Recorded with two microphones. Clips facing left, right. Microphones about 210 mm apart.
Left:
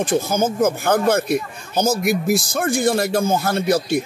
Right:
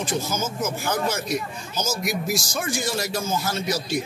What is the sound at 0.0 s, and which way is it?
A man's voice, 55° left (ahead or behind).